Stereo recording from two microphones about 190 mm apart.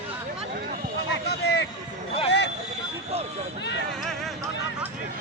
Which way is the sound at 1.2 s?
60° left (ahead or behind).